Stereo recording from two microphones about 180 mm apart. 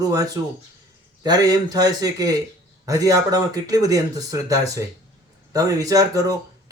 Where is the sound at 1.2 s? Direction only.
20° right (ahead or behind).